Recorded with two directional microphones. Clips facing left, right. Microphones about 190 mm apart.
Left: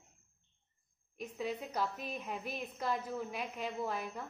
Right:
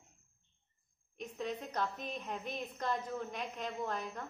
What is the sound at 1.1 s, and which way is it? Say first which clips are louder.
A woman's voice: left 1 dB; 5° left (ahead or behind).